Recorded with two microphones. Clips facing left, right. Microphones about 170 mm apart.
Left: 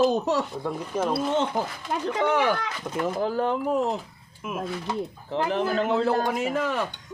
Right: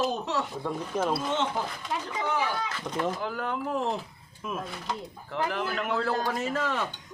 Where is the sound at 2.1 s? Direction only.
70° left (ahead or behind).